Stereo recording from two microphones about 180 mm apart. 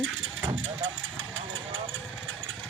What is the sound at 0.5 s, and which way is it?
Engine, 90° right.